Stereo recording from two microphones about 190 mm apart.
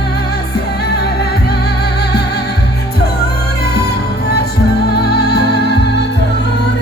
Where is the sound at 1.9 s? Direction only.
60° left (ahead or behind).